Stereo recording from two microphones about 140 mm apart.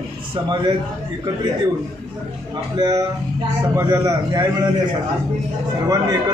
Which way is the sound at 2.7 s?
25° right (ahead or behind).